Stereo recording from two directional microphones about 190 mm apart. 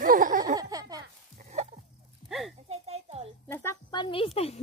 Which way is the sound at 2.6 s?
30° right (ahead or behind).